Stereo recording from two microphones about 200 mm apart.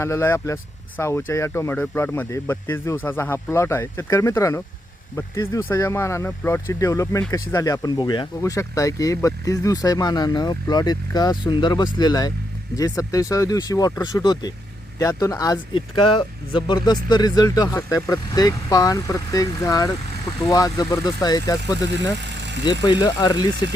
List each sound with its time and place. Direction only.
0.0 s speech: 15° left (ahead or behind)
22.3 s vehicle: 60° right (ahead or behind)
22.6 s speech: 20° left (ahead or behind)